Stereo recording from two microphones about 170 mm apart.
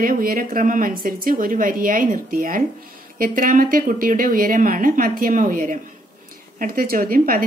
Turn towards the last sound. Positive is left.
turn(degrees=-60)  # may be behind; listen again after turning